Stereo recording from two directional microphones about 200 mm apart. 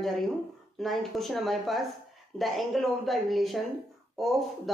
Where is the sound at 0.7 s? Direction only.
Centre (ahead or behind).